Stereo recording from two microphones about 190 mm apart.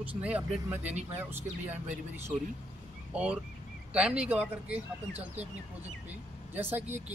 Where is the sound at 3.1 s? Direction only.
5° right (ahead or behind).